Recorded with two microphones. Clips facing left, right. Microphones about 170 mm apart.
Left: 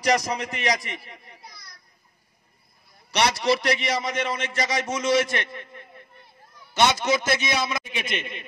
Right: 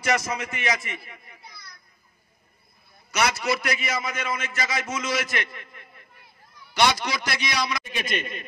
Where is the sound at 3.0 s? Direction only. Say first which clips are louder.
Left 3 dB; 35° left (ahead or behind).